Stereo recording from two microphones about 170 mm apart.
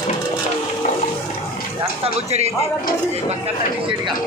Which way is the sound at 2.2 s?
40° right (ahead or behind).